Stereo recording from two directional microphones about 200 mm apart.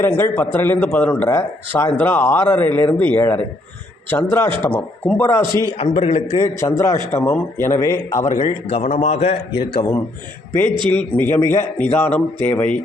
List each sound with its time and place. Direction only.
0.0 s speech: 10° left (ahead or behind)
5.7 s a man's voice: 30° left (ahead or behind)
6.4 s a man's voice: 15° left (ahead or behind)
9.7 s speech: 15° left (ahead or behind)